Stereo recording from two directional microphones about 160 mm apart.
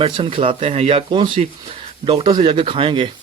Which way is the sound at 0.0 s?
35° right (ahead or behind).